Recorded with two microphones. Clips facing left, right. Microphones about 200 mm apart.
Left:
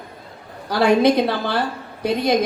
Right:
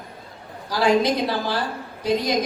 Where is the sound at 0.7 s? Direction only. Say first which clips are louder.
Left 4 dB; 60° left (ahead or behind).